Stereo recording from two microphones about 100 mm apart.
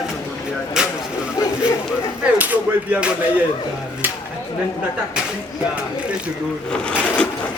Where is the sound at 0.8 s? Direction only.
5° right (ahead or behind).